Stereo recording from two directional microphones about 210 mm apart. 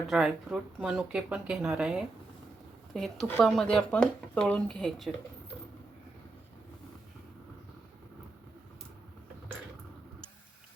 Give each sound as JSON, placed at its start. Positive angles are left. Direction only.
{"t": 0.1, "sound": "speech", "side_deg": -5}